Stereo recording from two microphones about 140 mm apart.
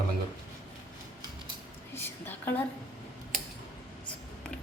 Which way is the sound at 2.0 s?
15° left (ahead or behind).